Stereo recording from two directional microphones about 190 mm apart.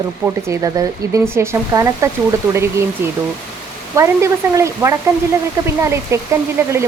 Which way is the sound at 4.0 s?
15° right (ahead or behind).